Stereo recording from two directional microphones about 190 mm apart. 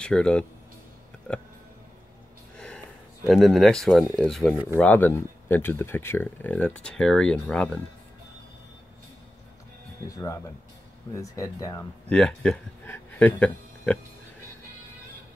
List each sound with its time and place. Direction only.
0.0 s speech: 5° left (ahead or behind)
1.3 s music: 5° left (ahead or behind)
2.5 s sniff: 5° left (ahead or behind)
3.3 s speech: centre (ahead or behind)
10.0 s speech: 15° left (ahead or behind)
12.1 s speech: 5° left (ahead or behind)